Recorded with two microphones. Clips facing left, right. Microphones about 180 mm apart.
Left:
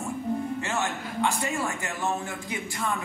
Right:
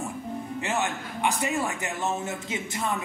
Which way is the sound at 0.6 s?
20° right (ahead or behind).